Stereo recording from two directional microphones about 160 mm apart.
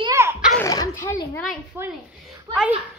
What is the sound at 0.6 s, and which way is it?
Speech, 20° left (ahead or behind).